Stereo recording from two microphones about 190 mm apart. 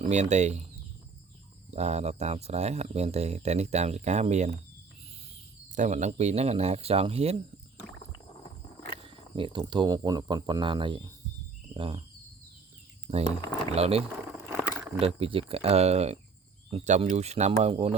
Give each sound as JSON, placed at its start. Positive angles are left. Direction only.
{"t": 0.0, "sound": "speech", "side_deg": -35}
{"t": 1.7, "sound": "speech", "side_deg": -35}
{"t": 5.7, "sound": "speech", "side_deg": -40}
{"t": 9.0, "sound": "speech", "side_deg": -25}
{"t": 13.7, "sound": "speech", "side_deg": -30}
{"t": 14.5, "sound": "a sound", "side_deg": -5}
{"t": 15.0, "sound": "speech", "side_deg": -30}